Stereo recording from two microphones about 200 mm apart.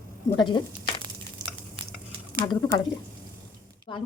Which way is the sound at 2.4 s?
25° left (ahead or behind).